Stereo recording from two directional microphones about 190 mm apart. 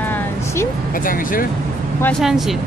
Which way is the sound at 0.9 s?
45° left (ahead or behind).